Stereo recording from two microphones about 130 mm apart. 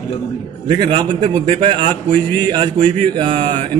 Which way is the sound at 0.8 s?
40° right (ahead or behind).